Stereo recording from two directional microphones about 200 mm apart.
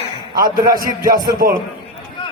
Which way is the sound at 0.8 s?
45° right (ahead or behind).